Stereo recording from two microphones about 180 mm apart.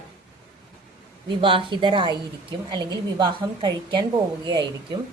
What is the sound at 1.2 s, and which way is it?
A woman's voice, 30° right (ahead or behind).